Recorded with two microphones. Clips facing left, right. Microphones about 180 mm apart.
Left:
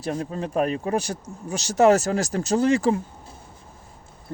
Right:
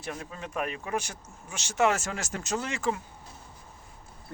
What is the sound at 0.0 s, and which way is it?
Speech, 35° left (ahead or behind).